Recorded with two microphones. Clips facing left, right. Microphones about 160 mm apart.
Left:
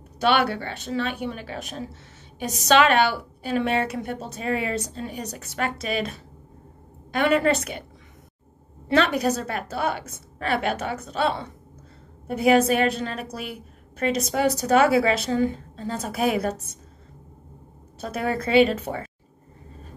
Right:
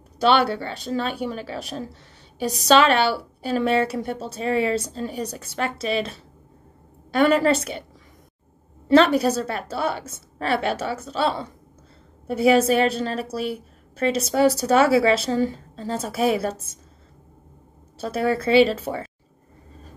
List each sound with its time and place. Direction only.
0.2 s a woman's voice: 30° right (ahead or behind)
8.9 s a woman's voice: 30° right (ahead or behind)
18.0 s a woman's voice: 30° right (ahead or behind)